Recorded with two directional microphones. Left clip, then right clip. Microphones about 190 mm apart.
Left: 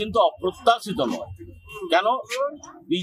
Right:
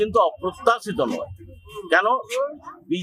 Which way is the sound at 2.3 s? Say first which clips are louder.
Right 1 dB; 45° right (ahead or behind).